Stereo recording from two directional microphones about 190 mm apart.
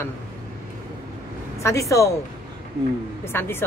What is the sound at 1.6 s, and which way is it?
Speech, 15° left (ahead or behind).